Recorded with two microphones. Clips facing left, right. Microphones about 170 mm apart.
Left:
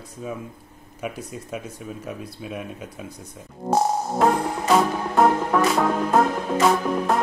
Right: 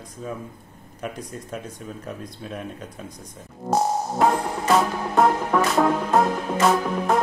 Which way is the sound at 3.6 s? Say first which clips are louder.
Left 1 dB; 15° left (ahead or behind).